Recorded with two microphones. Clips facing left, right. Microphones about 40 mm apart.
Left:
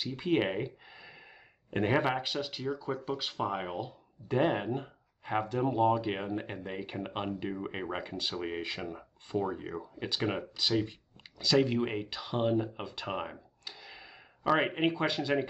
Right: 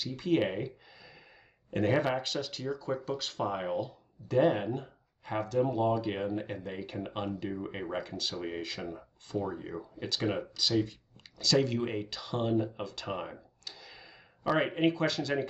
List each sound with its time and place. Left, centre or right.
0.0 s speech: left